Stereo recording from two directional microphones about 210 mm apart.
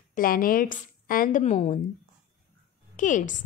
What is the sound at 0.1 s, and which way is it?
A woman's voice, 40° left (ahead or behind).